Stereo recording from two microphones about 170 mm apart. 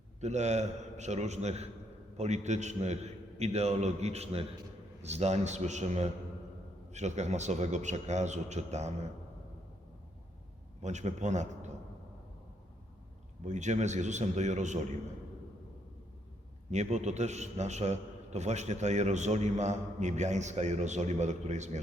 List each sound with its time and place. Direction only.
0.2 s a man's voice: 40° right (ahead or behind)
10.8 s a man's voice: 45° right (ahead or behind)
13.4 s a man's voice: 45° right (ahead or behind)
16.7 s a man's voice: 40° right (ahead or behind)